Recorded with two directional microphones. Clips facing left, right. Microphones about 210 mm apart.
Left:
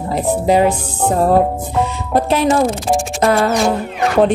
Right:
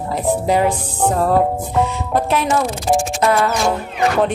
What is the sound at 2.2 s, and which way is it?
Speech, 30° left (ahead or behind).